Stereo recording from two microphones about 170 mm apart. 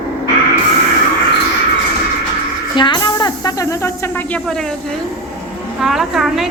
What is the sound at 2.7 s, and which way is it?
Snake, 25° left (ahead or behind).